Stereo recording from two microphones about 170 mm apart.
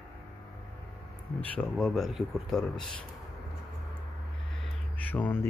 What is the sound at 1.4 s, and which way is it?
Speech, 5° left (ahead or behind).